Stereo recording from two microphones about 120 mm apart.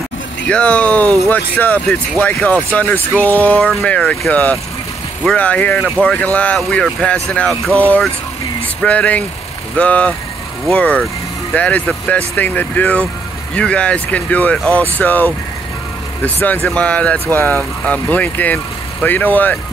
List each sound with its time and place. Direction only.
0.5 s speech: 10° left (ahead or behind)